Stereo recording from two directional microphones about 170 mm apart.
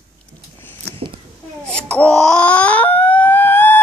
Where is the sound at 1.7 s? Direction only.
5° left (ahead or behind).